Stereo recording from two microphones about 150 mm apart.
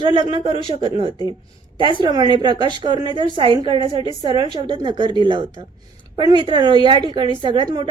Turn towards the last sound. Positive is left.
turn(degrees=-30)  # may be behind; listen again after turning